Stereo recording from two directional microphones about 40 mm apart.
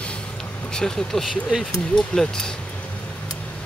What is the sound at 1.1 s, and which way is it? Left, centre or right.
Speech, centre.